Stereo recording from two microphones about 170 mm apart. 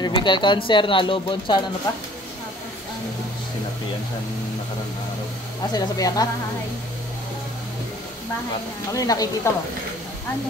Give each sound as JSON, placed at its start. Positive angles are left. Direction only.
{"t": 0.0, "sound": "speech", "side_deg": 25}
{"t": 5.7, "sound": "speech", "side_deg": 20}
{"t": 8.9, "sound": "speech", "side_deg": 20}